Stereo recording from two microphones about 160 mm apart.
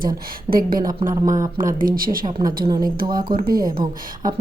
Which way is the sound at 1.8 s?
60° right (ahead or behind).